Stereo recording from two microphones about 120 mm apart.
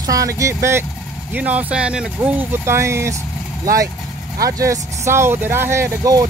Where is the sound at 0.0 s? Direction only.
30° right (ahead or behind); by 2.0 s 10° right (ahead or behind).